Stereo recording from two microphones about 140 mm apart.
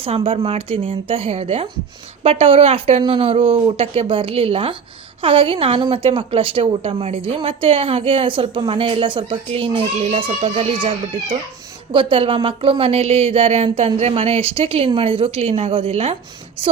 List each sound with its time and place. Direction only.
0.0 s a woman's voice: 40° right (ahead or behind)